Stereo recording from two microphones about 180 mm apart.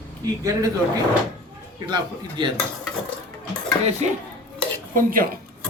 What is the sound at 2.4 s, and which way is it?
Speech, 25° right (ahead or behind).